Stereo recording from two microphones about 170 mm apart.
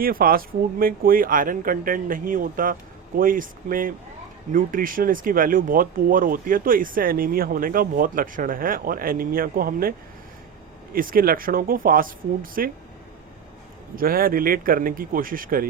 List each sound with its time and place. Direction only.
0.0 s speech: 60° right (ahead or behind)
10.9 s speech: 55° right (ahead or behind)
13.9 s speech: 60° right (ahead or behind)